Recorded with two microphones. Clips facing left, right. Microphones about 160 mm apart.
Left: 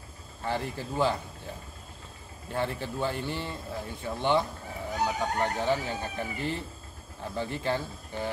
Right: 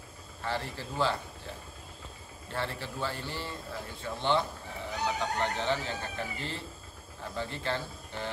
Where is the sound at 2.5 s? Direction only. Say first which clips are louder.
Left 5 dB; 15° left (ahead or behind).